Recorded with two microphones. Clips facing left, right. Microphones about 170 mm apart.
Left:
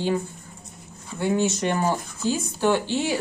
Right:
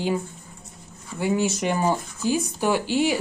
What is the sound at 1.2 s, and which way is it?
Speech, 10° right (ahead or behind).